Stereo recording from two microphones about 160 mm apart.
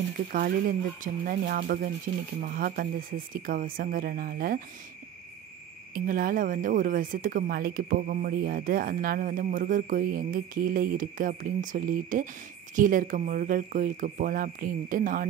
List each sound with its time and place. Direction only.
0.3 s speech: 60° right (ahead or behind)
2.1 s speech: 55° right (ahead or behind)
5.9 s speech: 60° right (ahead or behind)